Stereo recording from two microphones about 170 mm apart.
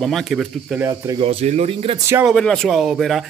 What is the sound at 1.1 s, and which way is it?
Speech, 40° right (ahead or behind).